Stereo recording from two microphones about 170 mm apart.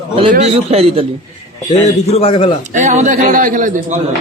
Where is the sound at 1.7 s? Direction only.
35° left (ahead or behind).